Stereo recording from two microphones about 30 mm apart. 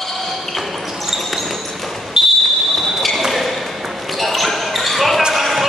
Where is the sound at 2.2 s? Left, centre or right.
Centre.